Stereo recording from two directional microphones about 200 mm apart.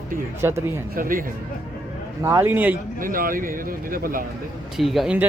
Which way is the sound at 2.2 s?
15° right (ahead or behind).